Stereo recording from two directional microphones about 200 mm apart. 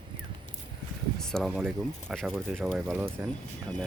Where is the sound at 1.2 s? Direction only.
Centre (ahead or behind).